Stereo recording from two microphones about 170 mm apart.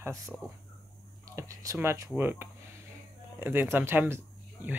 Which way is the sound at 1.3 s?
20° right (ahead or behind).